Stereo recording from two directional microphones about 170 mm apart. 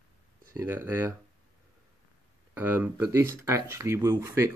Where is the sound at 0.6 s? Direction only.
15° right (ahead or behind).